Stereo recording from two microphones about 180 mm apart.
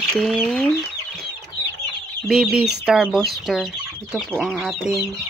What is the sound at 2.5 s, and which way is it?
Speech, 65° right (ahead or behind).